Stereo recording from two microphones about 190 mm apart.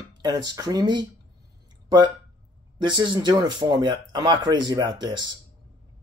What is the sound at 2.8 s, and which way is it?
Speech, 25° right (ahead or behind).